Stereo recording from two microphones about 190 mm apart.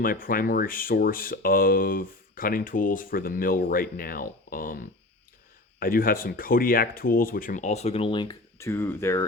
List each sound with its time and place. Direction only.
0.0 s speech: 50° left (ahead or behind)
5.8 s speech: 50° left (ahead or behind); by 9.2 s 15° left (ahead or behind)